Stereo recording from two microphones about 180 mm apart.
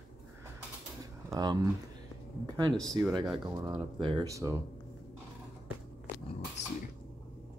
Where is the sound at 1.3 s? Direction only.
20° right (ahead or behind).